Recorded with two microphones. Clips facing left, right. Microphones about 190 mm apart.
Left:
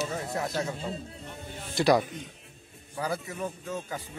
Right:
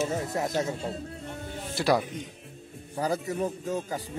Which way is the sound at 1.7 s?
5° right (ahead or behind).